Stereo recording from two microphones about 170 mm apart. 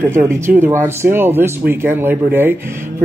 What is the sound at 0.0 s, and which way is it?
Speech, 15° right (ahead or behind).